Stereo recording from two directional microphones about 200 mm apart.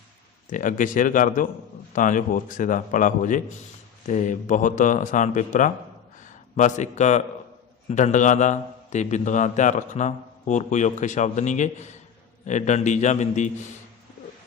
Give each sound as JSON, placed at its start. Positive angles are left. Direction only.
{"t": 0.5, "sound": "a man's voice", "side_deg": 40}